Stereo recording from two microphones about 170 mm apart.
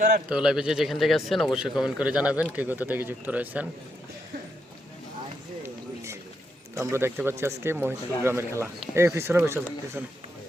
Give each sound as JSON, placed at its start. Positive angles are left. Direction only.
{"t": 0.3, "sound": "speech", "side_deg": -5}
{"t": 5.6, "sound": "a sound", "side_deg": -15}
{"t": 6.7, "sound": "speech", "side_deg": -15}